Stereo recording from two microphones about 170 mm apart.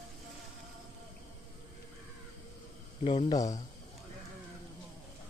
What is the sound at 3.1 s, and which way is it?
Speech, 35° left (ahead or behind).